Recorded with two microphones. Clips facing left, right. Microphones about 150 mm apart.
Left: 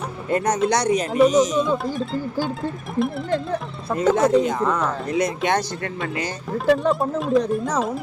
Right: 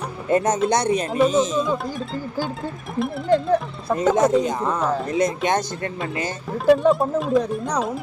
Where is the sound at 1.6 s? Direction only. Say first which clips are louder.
Left 2 dB; centre (ahead or behind).